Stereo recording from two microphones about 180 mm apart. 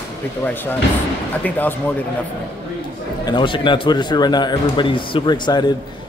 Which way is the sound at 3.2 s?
25° left (ahead or behind).